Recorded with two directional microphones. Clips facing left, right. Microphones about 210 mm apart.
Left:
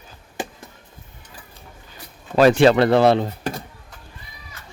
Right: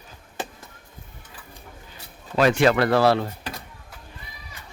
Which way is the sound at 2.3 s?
35° left (ahead or behind).